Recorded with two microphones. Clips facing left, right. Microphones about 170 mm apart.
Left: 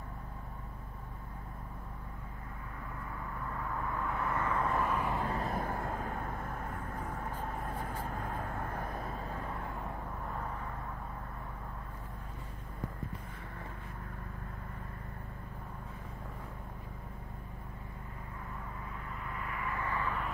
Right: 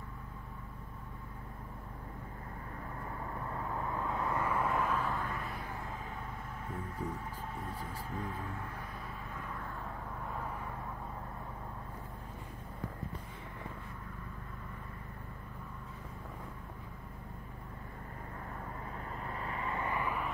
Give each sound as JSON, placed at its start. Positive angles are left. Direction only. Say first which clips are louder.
{"t": 3.5, "sound": "vehicle", "louder": "even", "side_deg": -25}
{"t": 4.9, "sound": "a sound", "louder": "left 1 dB", "side_deg": 15}
{"t": 5.2, "sound": "vehicle", "louder": "left 6 dB", "side_deg": 35}
{"t": 19.2, "sound": "vehicle", "louder": "even", "side_deg": -30}